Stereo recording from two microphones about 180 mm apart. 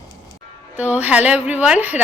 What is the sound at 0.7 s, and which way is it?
A woman's voice, 10° right (ahead or behind).